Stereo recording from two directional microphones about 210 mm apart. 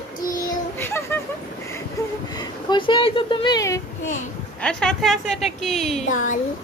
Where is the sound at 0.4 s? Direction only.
10° left (ahead or behind).